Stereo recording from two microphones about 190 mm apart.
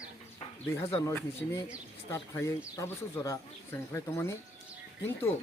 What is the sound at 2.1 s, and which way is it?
Speech, 15° left (ahead or behind).